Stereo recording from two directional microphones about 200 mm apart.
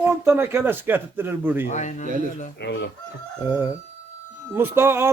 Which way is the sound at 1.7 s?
35° left (ahead or behind).